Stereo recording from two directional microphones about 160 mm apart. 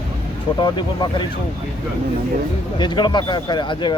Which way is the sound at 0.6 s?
30° left (ahead or behind).